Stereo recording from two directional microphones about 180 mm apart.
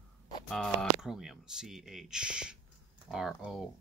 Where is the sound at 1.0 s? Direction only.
Centre (ahead or behind).